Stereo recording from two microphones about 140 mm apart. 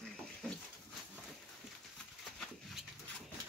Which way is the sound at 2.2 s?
Centre (ahead or behind).